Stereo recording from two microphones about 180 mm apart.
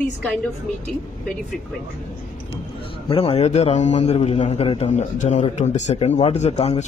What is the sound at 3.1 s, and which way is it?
A man's voice, 35° left (ahead or behind).